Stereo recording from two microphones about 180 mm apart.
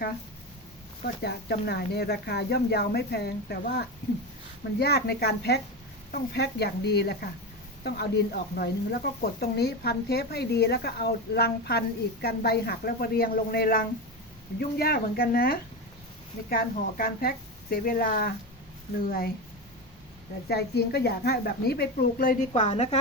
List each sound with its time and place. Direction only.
1.2 s speech: 65° left (ahead or behind)
20.5 s speech: 65° left (ahead or behind)
22.5 s a woman's voice: 35° left (ahead or behind)